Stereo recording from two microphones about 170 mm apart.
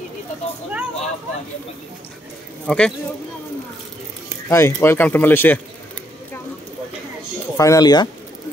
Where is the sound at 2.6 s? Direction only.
5° left (ahead or behind).